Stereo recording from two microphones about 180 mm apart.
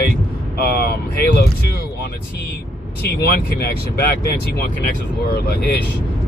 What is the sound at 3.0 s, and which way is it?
Speech, 65° left (ahead or behind).